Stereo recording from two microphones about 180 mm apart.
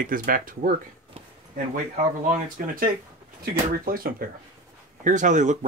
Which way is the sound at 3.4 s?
55° right (ahead or behind).